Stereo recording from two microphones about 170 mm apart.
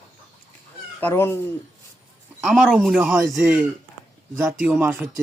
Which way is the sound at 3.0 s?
10° right (ahead or behind).